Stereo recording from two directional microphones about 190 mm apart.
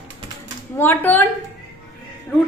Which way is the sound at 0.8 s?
10° left (ahead or behind).